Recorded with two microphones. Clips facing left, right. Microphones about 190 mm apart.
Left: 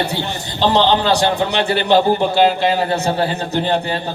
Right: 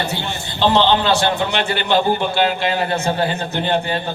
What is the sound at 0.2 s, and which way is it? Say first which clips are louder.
A man's voice: left 1 dB; 40° left (ahead or behind).